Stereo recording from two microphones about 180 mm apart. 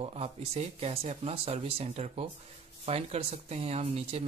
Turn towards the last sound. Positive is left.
turn(degrees=-35)  # may be behind; listen again after turning